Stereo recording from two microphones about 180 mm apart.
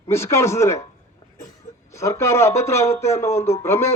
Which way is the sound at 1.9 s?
15° left (ahead or behind).